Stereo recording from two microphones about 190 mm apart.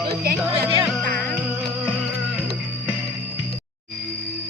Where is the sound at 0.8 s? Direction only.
5° left (ahead or behind).